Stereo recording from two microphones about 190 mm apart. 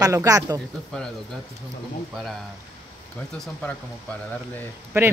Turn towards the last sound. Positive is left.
turn(degrees=-15)  # may be behind; listen again after turning